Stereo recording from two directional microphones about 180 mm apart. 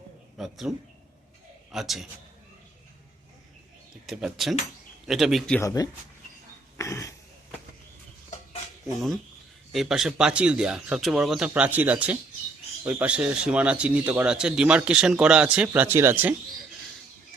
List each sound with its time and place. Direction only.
0.3 s speech: centre (ahead or behind)
1.7 s speech: centre (ahead or behind)
4.0 s speech: centre (ahead or behind)
5.5 s speech: 20° left (ahead or behind)
6.7 s a sound: 15° left (ahead or behind)
9.7 s a man's voice: centre (ahead or behind)